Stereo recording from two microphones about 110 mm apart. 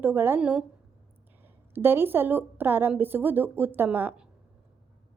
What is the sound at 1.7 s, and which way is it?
A woman's voice, 20° right (ahead or behind).